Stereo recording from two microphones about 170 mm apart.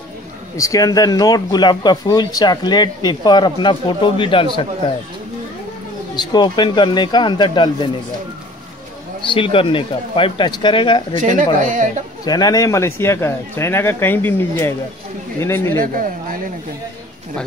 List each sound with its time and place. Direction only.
0.6 s speech: 20° left (ahead or behind)
6.1 s speech: 25° left (ahead or behind)
9.2 s speech: 30° left (ahead or behind)
11.1 s speech: 45° right (ahead or behind)
12.3 s speech: 20° left (ahead or behind)
15.8 s speech: 55° right (ahead or behind)